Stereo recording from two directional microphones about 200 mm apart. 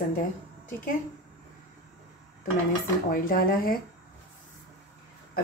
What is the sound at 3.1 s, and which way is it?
Speech, 45° left (ahead or behind).